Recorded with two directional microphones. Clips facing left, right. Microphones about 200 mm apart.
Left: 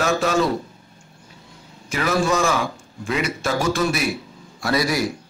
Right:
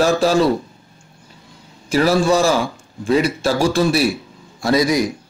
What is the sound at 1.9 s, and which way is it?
A man's voice, 35° right (ahead or behind).